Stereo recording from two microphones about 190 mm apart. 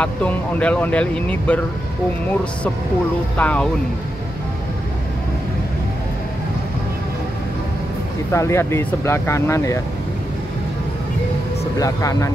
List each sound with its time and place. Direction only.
0.0 s speech: 5° left (ahead or behind)
3.3 s speech: 5° left (ahead or behind)
8.3 s speech: 15° left (ahead or behind)
11.8 s speech: 15° left (ahead or behind)